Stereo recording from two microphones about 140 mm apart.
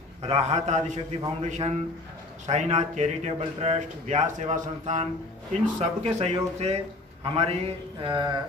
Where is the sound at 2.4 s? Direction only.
55° right (ahead or behind).